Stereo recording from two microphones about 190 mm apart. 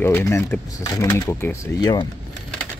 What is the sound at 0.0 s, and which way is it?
Speech, 15° left (ahead or behind).